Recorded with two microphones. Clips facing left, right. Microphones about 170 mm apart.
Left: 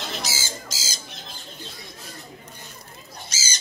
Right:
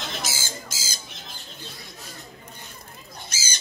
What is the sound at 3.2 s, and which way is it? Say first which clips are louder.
Squawk: left 1 dB; 55° right (ahead or behind).